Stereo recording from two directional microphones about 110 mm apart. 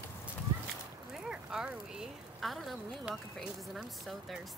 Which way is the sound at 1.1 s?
5° right (ahead or behind).